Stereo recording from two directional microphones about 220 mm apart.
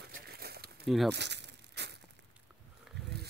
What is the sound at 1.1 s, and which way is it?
Crumpling, 50° right (ahead or behind).